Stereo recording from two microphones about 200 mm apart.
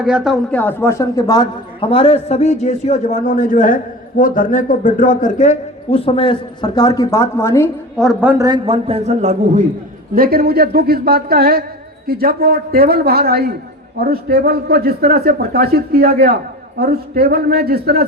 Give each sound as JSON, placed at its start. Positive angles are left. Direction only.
{"t": 0.0, "sound": "speech", "side_deg": -5}
{"t": 0.5, "sound": "a man's voice", "side_deg": 10}
{"t": 7.9, "sound": "a woman's voice", "side_deg": -5}
{"t": 8.4, "sound": "a man's voice", "side_deg": -25}
{"t": 10.2, "sound": "speech", "side_deg": -50}